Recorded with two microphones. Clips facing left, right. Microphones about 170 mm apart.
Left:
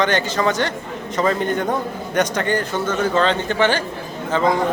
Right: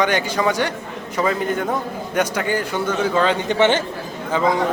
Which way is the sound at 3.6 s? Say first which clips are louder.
Right 3 dB; 20° right (ahead or behind).